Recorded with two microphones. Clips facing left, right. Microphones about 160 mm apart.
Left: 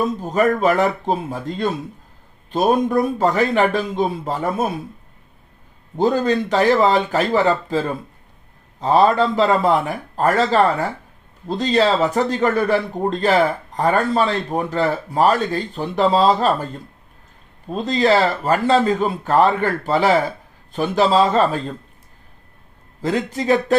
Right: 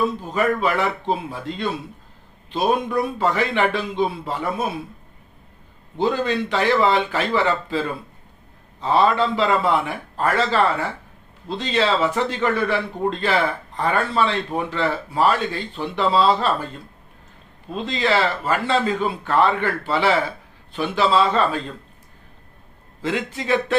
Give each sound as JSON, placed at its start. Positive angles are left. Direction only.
{"t": 0.0, "sound": "a man's voice", "side_deg": 45}
{"t": 6.0, "sound": "a man's voice", "side_deg": 40}
{"t": 17.7, "sound": "a man's voice", "side_deg": 40}
{"t": 23.0, "sound": "a man's voice", "side_deg": 40}